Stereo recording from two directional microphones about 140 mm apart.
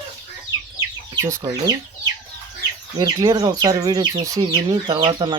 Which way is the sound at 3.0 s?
25° right (ahead or behind).